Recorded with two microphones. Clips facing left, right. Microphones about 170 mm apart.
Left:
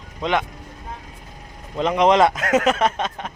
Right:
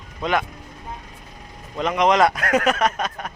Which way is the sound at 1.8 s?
30° left (ahead or behind).